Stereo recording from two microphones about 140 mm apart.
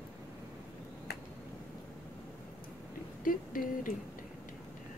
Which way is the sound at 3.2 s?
80° left.